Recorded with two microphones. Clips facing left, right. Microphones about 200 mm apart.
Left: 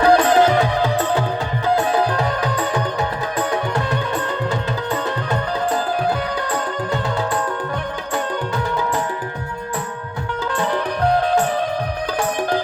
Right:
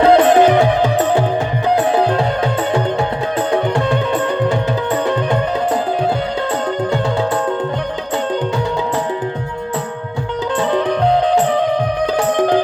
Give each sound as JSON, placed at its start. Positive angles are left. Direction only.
{"t": 0.0, "sound": "music", "side_deg": -20}
{"t": 10.6, "sound": "music", "side_deg": -20}